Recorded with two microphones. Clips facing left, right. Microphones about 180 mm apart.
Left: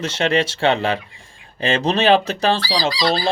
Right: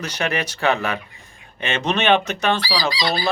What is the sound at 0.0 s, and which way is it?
A man's voice, 25° left (ahead or behind).